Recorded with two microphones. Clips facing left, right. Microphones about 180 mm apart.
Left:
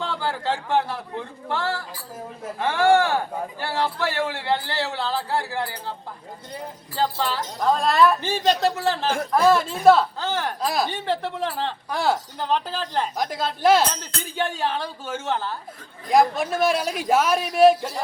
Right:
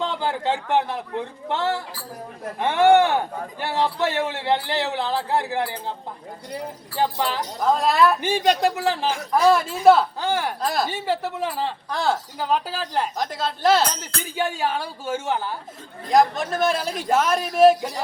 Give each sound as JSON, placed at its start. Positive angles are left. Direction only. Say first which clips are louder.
{"t": 0.0, "sound": "a man's voice", "louder": "right 2 dB", "side_deg": -20}
{"t": 6.9, "sound": "speech", "louder": "right 1 dB", "side_deg": -15}
{"t": 7.6, "sound": "speech", "louder": "even", "side_deg": -5}
{"t": 9.8, "sound": "a man's voice", "louder": "right 1 dB", "side_deg": 0}
{"t": 10.6, "sound": "speech", "louder": "even", "side_deg": 0}
{"t": 11.9, "sound": "speech", "louder": "left 1 dB", "side_deg": 10}
{"t": 12.4, "sound": "speech", "louder": "right 1 dB", "side_deg": -5}
{"t": 13.1, "sound": "speech", "louder": "even", "side_deg": 10}
{"t": 13.9, "sound": "speech", "louder": "right 1 dB", "side_deg": -10}
{"t": 16.0, "sound": "a man's voice", "louder": "even", "side_deg": 5}